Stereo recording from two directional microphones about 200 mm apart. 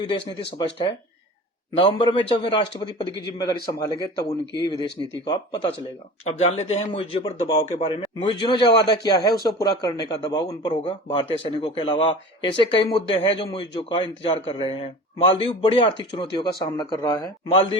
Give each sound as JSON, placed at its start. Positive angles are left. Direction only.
{"t": 0.0, "sound": "a man's voice", "side_deg": 25}